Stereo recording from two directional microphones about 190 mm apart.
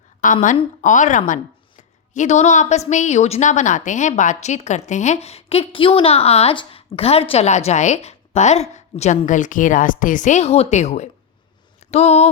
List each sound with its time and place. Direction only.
0.5 s a woman's voice: 40° left (ahead or behind)